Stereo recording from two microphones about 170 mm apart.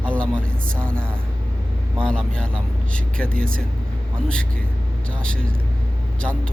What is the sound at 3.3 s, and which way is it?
Speech, 55° right (ahead or behind).